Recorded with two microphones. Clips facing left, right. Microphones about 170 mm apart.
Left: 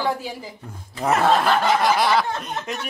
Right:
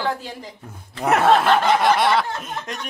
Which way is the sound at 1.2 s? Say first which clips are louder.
Right 2 dB; centre (ahead or behind).